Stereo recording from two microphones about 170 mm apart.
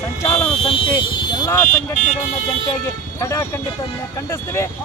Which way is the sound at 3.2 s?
15° left (ahead or behind).